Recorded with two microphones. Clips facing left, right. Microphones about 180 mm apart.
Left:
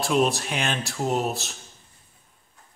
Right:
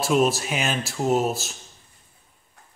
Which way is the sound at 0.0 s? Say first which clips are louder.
Right 2 dB; centre (ahead or behind).